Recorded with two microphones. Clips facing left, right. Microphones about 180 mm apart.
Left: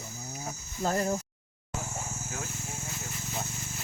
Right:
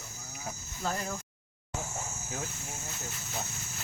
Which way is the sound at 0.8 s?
40° left (ahead or behind).